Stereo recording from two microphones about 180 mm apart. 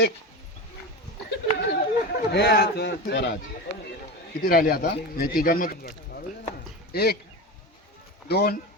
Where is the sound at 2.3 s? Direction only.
65° left (ahead or behind).